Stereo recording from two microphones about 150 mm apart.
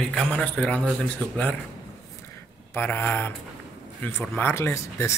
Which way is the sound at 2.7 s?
15° left (ahead or behind).